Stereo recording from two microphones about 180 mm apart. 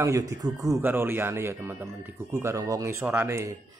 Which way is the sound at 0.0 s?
15° right (ahead or behind).